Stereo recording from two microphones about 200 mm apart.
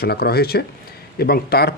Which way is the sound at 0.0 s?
50° left (ahead or behind).